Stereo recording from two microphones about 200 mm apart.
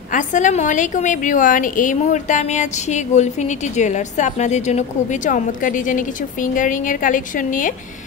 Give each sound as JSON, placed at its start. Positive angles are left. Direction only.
{"t": 0.1, "sound": "a woman's voice", "side_deg": 40}